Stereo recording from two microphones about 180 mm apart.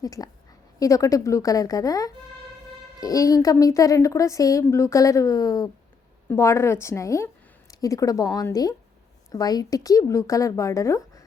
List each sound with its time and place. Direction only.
0.0 s a woman's voice: 20° left (ahead or behind)